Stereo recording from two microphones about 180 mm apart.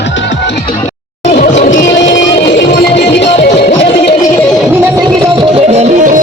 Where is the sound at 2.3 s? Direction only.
70° left (ahead or behind).